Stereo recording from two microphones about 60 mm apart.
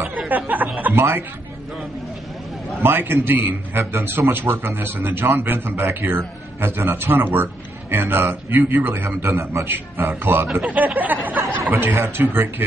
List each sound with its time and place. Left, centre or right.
0.5 s speech: right
0.9 s speech: right
2.8 s a man's voice: right
9.7 s a man's voice: right
11.7 s a man's voice: right